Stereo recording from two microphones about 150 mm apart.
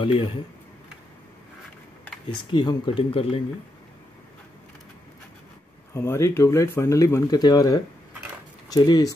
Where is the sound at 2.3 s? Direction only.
30° left (ahead or behind).